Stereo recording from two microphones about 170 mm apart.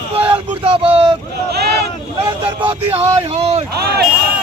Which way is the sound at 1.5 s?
70° right (ahead or behind).